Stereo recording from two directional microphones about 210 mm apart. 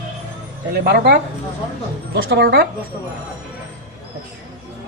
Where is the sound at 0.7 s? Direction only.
50° right (ahead or behind).